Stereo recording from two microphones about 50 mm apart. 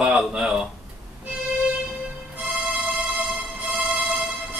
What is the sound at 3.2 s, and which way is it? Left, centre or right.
Music, centre.